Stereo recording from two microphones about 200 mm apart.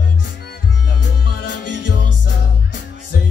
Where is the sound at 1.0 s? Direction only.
65° left (ahead or behind).